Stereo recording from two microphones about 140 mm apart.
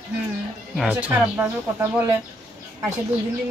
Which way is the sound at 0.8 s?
10° right (ahead or behind).